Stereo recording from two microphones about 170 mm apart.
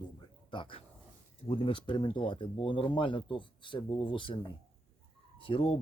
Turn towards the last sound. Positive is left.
turn(degrees=30)  # may be behind; listen again after turning